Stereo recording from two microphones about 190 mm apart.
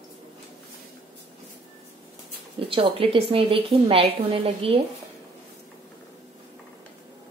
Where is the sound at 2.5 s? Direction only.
30° right (ahead or behind).